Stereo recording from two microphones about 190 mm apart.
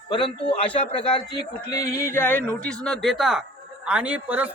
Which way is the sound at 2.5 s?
5° left (ahead or behind).